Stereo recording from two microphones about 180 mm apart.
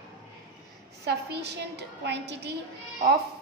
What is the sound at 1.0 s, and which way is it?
A woman's voice, 65° right (ahead or behind).